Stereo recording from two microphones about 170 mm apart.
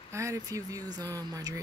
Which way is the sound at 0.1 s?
15° right (ahead or behind).